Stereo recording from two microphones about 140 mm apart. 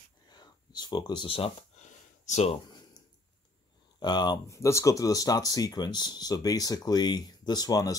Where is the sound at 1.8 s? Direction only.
60° left (ahead or behind).